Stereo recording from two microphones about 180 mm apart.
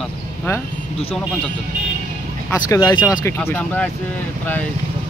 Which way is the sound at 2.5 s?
20° left (ahead or behind).